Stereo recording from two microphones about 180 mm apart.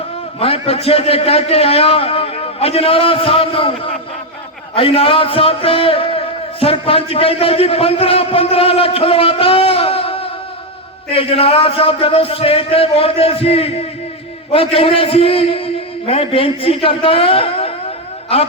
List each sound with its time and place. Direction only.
0.3 s a man's voice: 35° left (ahead or behind)